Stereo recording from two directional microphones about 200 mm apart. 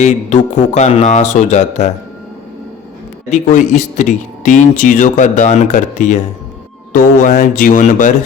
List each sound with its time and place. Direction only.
0.0 s speech: 35° left (ahead or behind)
3.3 s speech: 35° left (ahead or behind)